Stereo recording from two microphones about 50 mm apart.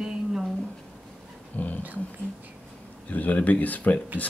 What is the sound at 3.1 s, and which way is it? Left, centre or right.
Speech, left.